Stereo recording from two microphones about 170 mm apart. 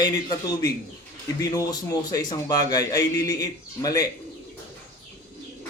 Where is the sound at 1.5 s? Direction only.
25° left (ahead or behind).